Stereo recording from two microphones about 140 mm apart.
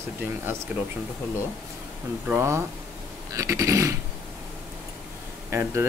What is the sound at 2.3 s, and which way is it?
Speech, 20° right (ahead or behind).